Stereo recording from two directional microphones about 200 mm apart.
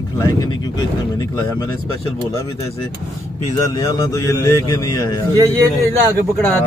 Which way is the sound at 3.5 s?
20° left (ahead or behind).